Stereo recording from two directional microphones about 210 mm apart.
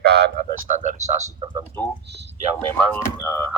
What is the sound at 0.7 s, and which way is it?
Speech, 35° right (ahead or behind).